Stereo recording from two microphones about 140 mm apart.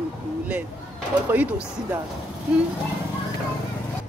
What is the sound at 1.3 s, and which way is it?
Speech, 10° right (ahead or behind).